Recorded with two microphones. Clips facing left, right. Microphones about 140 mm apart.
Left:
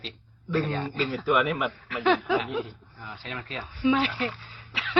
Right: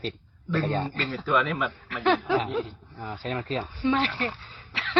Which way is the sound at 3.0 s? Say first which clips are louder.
Right 7 dB; 40° right (ahead or behind).